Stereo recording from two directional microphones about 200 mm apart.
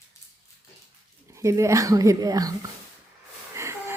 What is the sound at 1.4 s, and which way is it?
Speech, 15° right (ahead or behind).